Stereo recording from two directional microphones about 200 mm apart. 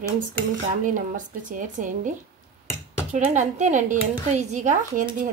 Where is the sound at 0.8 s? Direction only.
40° right (ahead or behind).